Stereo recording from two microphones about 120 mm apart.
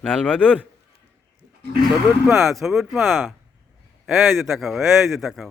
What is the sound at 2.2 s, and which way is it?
Speech, centre (ahead or behind).